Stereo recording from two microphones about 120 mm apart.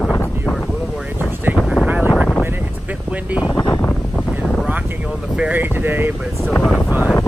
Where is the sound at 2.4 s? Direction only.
15° right (ahead or behind).